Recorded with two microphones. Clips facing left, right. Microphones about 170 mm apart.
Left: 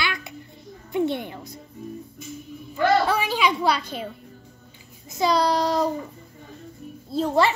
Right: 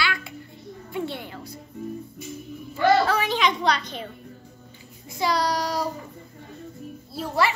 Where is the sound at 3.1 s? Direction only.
10° left (ahead or behind).